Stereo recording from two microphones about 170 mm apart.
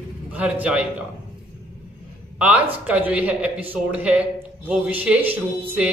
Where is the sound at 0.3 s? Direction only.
10° right (ahead or behind).